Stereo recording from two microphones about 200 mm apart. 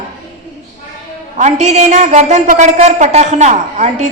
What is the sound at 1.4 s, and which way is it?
A woman's voice, 35° right (ahead or behind).